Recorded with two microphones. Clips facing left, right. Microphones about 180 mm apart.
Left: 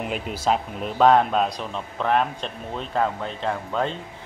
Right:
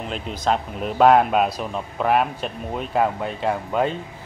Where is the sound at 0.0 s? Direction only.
10° left (ahead or behind).